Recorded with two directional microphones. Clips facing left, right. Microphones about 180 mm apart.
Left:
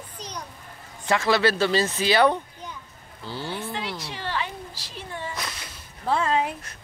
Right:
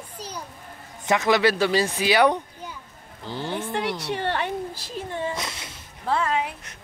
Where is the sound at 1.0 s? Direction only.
20° right (ahead or behind).